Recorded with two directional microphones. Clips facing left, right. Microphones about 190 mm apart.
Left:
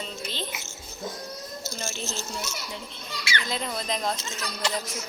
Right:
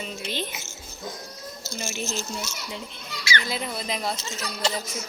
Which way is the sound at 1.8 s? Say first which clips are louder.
Right 4 dB; 10° right (ahead or behind).